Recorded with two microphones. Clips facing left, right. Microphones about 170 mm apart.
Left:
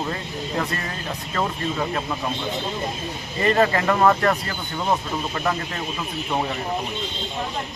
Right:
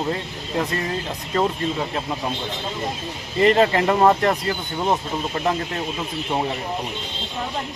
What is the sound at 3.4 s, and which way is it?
Speech, 20° right (ahead or behind).